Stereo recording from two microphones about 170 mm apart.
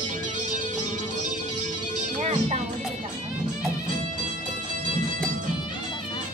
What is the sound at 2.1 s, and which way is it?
Music, 40° right (ahead or behind).